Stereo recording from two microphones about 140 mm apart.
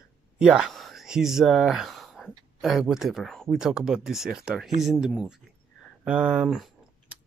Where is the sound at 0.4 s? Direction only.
5° right (ahead or behind).